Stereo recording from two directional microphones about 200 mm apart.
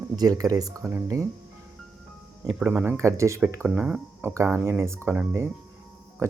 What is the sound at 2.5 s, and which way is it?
Speech, 10° right (ahead or behind).